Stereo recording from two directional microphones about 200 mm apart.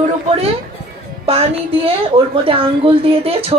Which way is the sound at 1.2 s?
30° right (ahead or behind).